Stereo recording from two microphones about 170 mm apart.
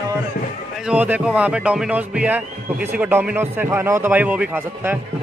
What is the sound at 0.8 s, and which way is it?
Speech, 10° right (ahead or behind).